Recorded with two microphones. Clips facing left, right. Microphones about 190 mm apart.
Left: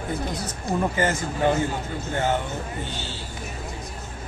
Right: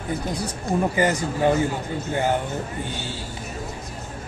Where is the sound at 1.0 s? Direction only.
15° right (ahead or behind).